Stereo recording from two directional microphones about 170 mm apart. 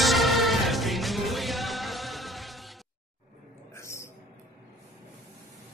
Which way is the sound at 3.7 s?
15° left (ahead or behind).